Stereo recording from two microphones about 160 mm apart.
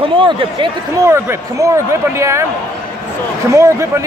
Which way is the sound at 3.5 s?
20° right (ahead or behind).